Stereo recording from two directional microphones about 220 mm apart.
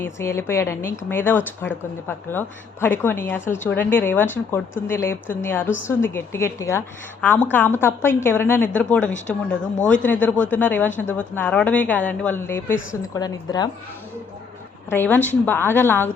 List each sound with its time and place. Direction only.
0.0 s a woman's voice: 10° left (ahead or behind)
14.8 s a woman's voice: 10° left (ahead or behind)